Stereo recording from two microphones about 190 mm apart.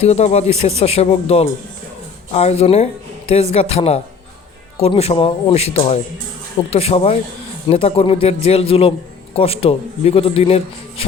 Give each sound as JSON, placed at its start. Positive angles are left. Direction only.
{"t": 0.0, "sound": "speech", "side_deg": 35}